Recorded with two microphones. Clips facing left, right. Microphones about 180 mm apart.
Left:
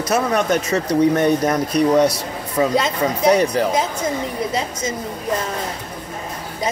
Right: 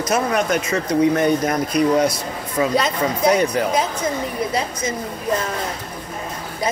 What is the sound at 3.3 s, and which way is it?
Speech, 35° left (ahead or behind).